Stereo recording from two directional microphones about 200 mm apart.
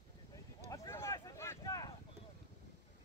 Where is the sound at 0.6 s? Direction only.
15° left (ahead or behind).